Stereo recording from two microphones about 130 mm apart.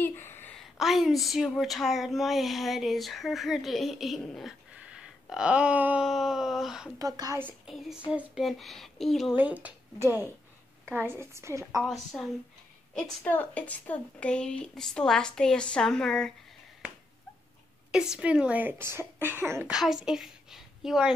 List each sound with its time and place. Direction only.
0.0 s a woman's voice: 15° left (ahead or behind)
0.7 s speech: centre (ahead or behind)
4.7 s a sound: 5° right (ahead or behind)
7.0 s a woman's voice: 30° right (ahead or behind)
8.1 s speech: 5° right (ahead or behind)
9.4 s a woman's voice: 10° right (ahead or behind)
11.8 s speech: centre (ahead or behind)
17.9 s speech: 5° right (ahead or behind)
19.7 s a woman's voice: 5° right (ahead or behind)